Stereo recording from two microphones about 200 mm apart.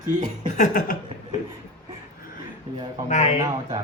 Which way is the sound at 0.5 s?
40° left (ahead or behind).